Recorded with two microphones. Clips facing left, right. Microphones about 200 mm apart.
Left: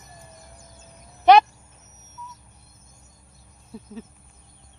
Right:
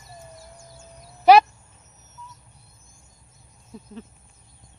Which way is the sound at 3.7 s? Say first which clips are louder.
Left 2 dB; 5° left (ahead or behind).